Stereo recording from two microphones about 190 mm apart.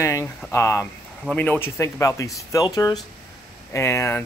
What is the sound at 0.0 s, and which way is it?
Speech, 15° left (ahead or behind).